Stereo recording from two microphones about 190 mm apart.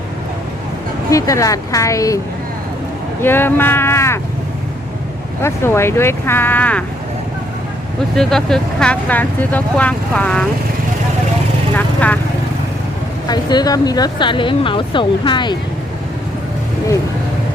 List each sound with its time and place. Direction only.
1.1 s speech: 15° left (ahead or behind)
5.4 s speech: 15° left (ahead or behind)
8.1 s speech: centre (ahead or behind)
11.8 s speech: 10° left (ahead or behind)
13.2 s speech: 20° left (ahead or behind)